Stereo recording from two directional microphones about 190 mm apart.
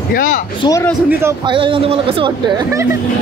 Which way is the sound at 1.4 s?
25° right (ahead or behind).